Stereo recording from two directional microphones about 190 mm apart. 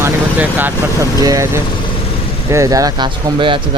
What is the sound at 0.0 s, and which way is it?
Vehicle, 10° right (ahead or behind).